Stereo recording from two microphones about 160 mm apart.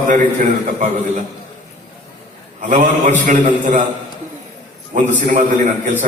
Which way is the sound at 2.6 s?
50° right (ahead or behind).